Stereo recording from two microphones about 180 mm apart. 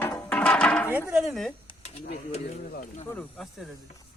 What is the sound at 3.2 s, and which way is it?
Speech, centre (ahead or behind).